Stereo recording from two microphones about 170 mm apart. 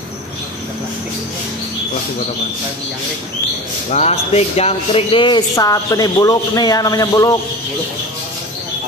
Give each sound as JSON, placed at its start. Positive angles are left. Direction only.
{"t": 3.9, "sound": "speech", "side_deg": 40}